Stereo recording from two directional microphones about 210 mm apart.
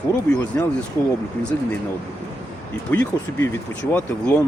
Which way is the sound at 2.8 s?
5° left (ahead or behind).